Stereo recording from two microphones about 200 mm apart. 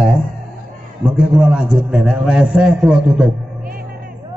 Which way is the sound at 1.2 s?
5° right (ahead or behind).